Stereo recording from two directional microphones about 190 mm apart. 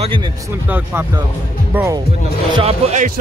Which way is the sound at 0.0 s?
25° right (ahead or behind).